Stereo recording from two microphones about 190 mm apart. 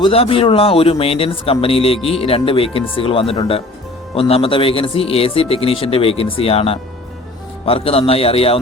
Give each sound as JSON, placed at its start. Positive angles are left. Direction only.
{"t": 0.0, "sound": "speech", "side_deg": 30}